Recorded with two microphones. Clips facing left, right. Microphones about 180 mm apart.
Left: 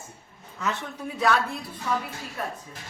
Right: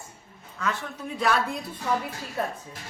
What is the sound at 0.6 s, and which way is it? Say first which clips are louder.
Speech: even; 25° left (ahead or behind).